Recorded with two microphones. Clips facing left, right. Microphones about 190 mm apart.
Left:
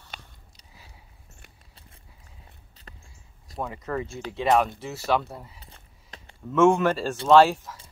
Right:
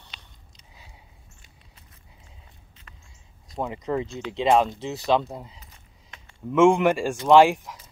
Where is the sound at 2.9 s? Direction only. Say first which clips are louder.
Left 4 dB; 35° left (ahead or behind).